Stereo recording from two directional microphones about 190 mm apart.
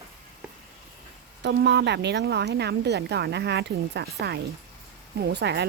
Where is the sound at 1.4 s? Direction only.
65° right (ahead or behind).